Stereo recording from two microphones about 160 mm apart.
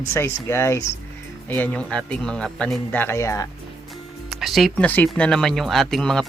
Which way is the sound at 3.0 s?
15° left (ahead or behind).